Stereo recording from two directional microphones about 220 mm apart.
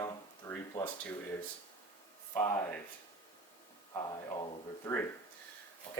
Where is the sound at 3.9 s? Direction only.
20° left (ahead or behind).